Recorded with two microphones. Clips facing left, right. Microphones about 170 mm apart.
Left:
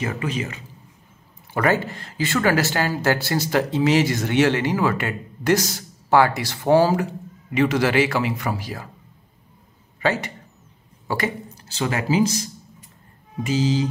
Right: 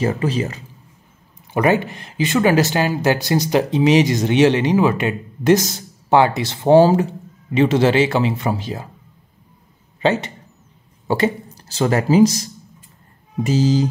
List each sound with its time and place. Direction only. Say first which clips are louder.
0.0 s speech: right 6 dB; 35° right (ahead or behind)
1.5 s speech: right 4 dB; 20° right (ahead or behind)
10.0 s speech: right 4 dB; 25° right (ahead or behind)
11.1 s a sound: right 7 dB; 25° right (ahead or behind)
11.6 s speech: right 6 dB; 40° right (ahead or behind)